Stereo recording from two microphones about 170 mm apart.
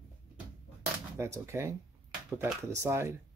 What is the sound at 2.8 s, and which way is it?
Speech, 15° right (ahead or behind).